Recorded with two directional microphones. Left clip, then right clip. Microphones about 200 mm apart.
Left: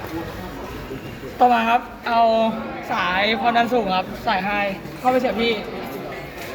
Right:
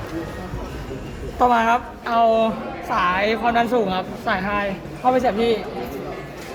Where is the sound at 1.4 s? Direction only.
20° right (ahead or behind).